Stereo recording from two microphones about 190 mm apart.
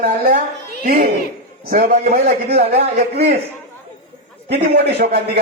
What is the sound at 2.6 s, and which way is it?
Speech, 60° right (ahead or behind).